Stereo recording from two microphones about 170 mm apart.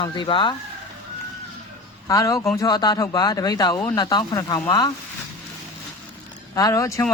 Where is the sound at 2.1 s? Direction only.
20° left (ahead or behind).